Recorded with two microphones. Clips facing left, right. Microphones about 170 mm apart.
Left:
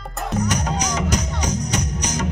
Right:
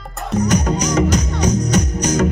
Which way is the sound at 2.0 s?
45° right (ahead or behind).